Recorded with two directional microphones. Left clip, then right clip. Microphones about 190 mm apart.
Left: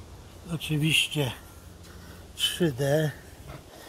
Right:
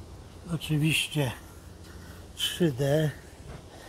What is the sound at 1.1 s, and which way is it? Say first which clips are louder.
Speech: left 1 dB; 15° right (ahead or behind).